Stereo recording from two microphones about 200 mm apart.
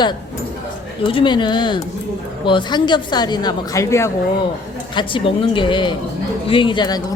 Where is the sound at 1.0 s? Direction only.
25° left (ahead or behind).